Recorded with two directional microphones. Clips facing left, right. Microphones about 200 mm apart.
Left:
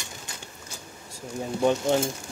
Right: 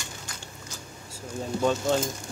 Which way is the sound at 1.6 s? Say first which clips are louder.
Left 2 dB; 15° left (ahead or behind).